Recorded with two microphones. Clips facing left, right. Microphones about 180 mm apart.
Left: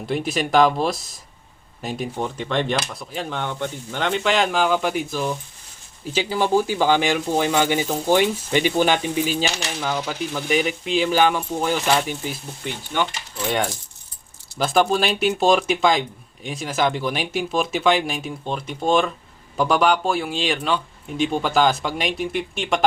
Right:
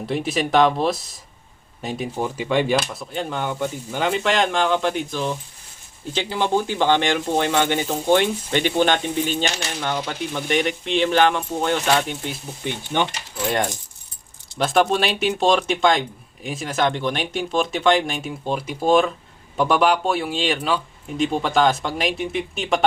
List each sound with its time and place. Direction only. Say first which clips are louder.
0.0 s speech: right 1 dB; centre (ahead or behind)
12.6 s speech: right 2 dB; 20° right (ahead or behind)
13.3 s speech: right 1 dB; centre (ahead or behind)